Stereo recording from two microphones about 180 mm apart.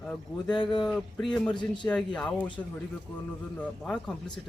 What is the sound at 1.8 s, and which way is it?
Speech, 5° left (ahead or behind).